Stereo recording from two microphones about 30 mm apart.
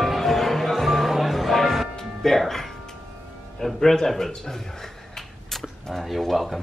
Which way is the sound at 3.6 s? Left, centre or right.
Centre.